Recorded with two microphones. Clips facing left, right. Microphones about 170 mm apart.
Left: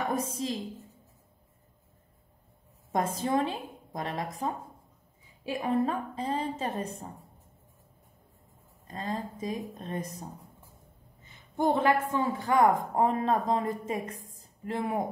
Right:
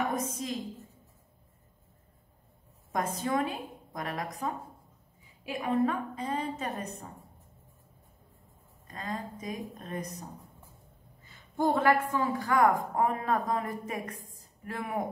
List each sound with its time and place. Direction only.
0.1 s a woman's voice: 30° left (ahead or behind)
2.9 s a woman's voice: 30° left (ahead or behind)
8.8 s a woman's voice: 30° left (ahead or behind)
11.2 s a woman's voice: 20° left (ahead or behind)